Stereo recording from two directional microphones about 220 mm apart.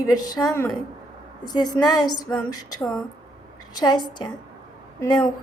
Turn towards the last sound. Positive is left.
turn(degrees=15)  # may be behind; listen again after turning